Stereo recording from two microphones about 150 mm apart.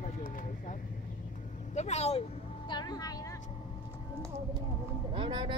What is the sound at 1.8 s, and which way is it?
Speech, 45° left (ahead or behind).